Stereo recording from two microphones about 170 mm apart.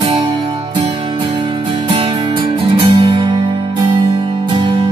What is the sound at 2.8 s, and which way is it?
Music, 30° right (ahead or behind).